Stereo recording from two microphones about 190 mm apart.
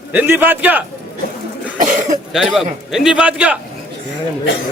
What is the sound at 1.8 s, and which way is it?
Cough, 40° right (ahead or behind).